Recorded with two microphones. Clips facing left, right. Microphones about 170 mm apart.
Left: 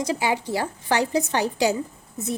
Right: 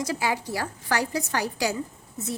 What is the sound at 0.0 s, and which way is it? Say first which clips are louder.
A woman's voice: left 3 dB; 20° left (ahead or behind).